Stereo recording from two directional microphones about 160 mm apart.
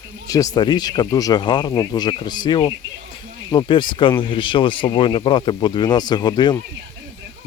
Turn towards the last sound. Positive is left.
turn(degrees=25)  # may be behind; listen again after turning